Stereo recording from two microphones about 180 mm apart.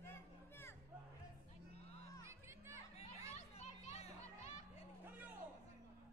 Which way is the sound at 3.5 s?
35° left (ahead or behind).